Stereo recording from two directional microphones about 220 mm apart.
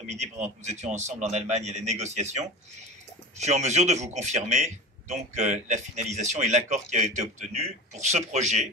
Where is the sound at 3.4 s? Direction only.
30° right (ahead or behind).